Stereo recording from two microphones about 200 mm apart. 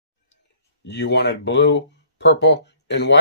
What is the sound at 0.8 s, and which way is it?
Speech, 55° left (ahead or behind).